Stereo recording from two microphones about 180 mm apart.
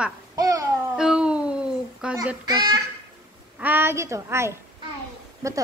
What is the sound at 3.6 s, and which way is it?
A woman's voice, 10° right (ahead or behind).